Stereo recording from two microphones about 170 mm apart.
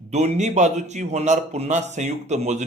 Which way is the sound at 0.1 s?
40° right (ahead or behind).